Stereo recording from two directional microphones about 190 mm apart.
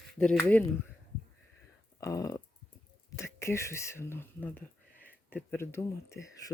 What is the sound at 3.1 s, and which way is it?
Speech, 15° left (ahead or behind).